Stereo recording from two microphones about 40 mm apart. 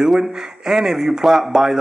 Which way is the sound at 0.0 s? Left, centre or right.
Centre.